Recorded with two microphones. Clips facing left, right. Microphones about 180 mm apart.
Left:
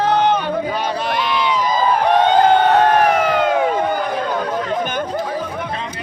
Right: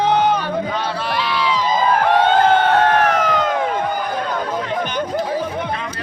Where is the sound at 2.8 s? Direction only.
10° left (ahead or behind).